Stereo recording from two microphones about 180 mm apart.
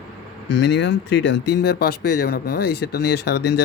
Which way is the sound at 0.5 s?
85° left.